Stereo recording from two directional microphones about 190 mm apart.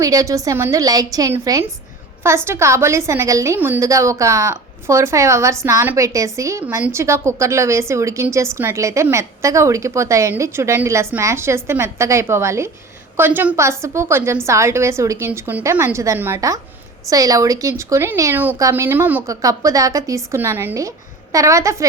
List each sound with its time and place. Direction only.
0.0 s a woman's voice: 15° right (ahead or behind)